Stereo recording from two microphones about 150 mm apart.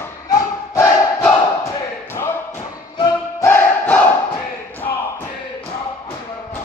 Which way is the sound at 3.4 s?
15° left (ahead or behind).